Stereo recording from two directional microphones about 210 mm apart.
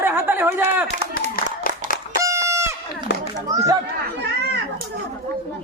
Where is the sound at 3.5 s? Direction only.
15° right (ahead or behind).